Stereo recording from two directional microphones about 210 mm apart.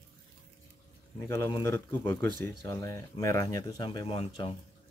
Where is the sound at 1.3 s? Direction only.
15° left (ahead or behind).